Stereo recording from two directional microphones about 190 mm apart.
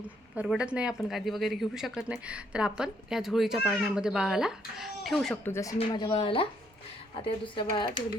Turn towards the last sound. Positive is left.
turn(degrees=25)  # may be behind; listen again after turning